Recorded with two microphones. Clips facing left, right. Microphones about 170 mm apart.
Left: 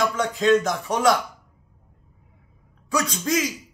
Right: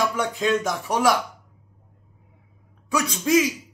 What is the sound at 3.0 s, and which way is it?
Speech, 10° right (ahead or behind).